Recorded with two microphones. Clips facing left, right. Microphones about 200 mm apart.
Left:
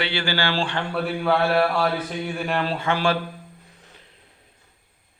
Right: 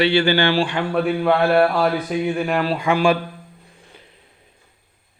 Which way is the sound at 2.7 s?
15° right (ahead or behind).